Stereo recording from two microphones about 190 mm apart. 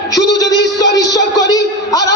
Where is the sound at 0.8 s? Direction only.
65° left (ahead or behind).